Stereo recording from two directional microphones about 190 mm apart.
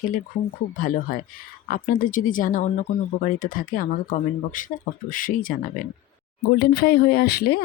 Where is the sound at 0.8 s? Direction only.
45° left (ahead or behind).